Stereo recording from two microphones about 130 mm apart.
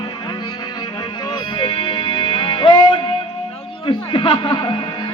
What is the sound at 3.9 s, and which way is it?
Speech, 40° left (ahead or behind).